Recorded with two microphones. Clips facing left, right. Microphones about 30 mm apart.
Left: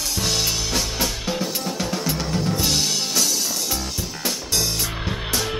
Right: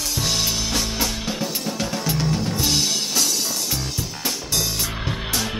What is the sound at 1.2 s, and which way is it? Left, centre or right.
Drum kit, centre.